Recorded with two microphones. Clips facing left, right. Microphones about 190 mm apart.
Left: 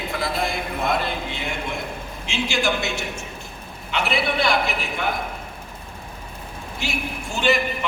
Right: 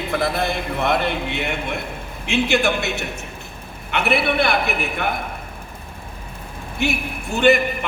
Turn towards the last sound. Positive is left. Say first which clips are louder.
# right 6 dB
turn(degrees=-60)  # may be behind; listen again after turning